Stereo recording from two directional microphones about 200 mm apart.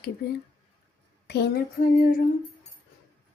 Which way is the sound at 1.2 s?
55° left (ahead or behind).